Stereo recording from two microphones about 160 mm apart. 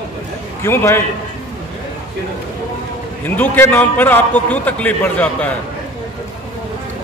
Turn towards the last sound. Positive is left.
turn(degrees=10)  # may be behind; listen again after turning